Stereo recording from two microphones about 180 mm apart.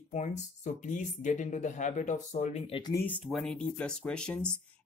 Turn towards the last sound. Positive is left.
turn(degrees=5)  # may be behind; listen again after turning